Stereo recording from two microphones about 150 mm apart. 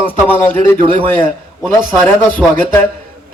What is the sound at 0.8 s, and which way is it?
Speech, 35° right (ahead or behind).